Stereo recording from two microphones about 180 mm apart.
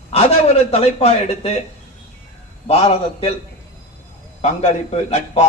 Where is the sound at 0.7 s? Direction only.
35° left (ahead or behind).